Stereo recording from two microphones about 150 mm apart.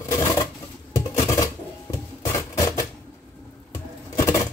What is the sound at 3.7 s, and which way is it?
Sewing machine, 20° left (ahead or behind).